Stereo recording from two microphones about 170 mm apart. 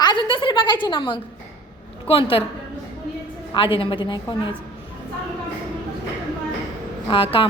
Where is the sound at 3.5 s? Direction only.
30° left (ahead or behind).